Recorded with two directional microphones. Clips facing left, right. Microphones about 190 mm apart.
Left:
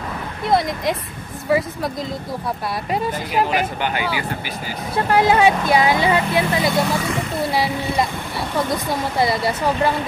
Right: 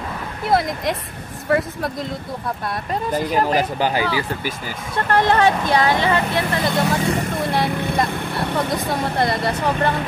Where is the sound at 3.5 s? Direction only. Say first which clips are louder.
Right 2 dB; 35° right (ahead or behind).